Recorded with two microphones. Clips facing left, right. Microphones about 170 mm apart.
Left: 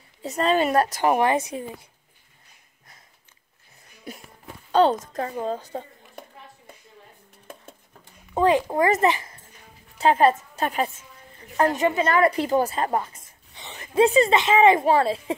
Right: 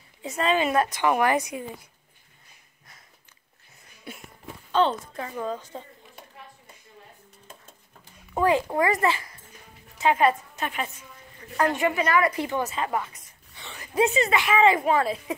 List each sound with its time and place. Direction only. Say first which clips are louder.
0.5 s a woman's voice: left 2 dB; 40° left (ahead or behind)
1.2 s a child's voice: left 1 dB; 25° left (ahead or behind)
4.7 s a woman's voice: left 4 dB; 40° left (ahead or behind)
5.3 s a woman's voice: left 3 dB; 30° left (ahead or behind)
8.4 s a child's voice: left 3 dB; 20° left (ahead or behind)
9.9 s a woman's voice: left 3 dB; 35° left (ahead or behind)